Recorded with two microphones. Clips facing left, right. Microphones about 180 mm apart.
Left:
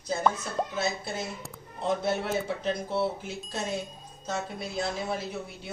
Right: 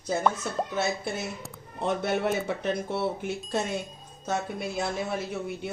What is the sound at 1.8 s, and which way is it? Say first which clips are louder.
Speech: right 2 dB; 65° right (ahead or behind).